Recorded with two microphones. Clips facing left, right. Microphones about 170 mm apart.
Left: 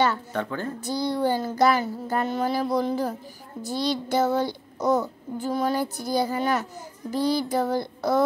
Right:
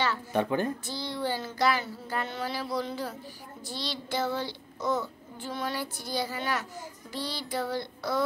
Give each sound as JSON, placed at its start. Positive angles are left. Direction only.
{"t": 0.3, "sound": "speech", "side_deg": -15}
{"t": 1.1, "sound": "child singing", "side_deg": 45}